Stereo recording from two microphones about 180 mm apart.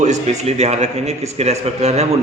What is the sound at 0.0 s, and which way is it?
A man's voice, 40° right (ahead or behind).